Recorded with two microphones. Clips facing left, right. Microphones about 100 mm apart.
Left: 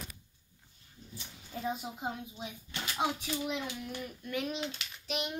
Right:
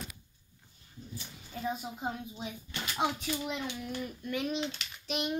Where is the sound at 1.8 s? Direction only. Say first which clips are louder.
Right 1 dB; 10° left (ahead or behind).